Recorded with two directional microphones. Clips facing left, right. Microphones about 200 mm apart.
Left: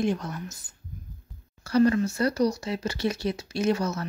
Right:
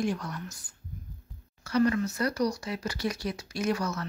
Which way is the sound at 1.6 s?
30° left (ahead or behind).